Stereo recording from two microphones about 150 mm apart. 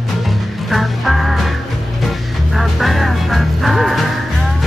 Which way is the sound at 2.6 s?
Centre (ahead or behind).